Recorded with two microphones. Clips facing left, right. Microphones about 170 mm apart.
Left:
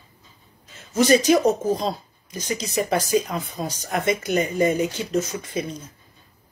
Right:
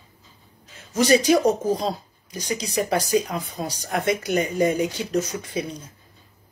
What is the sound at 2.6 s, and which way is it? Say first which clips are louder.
Speech: left 1 dB; 5° left (ahead or behind).